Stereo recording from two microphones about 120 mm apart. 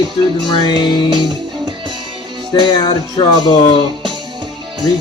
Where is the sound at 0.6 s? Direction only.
40° left (ahead or behind).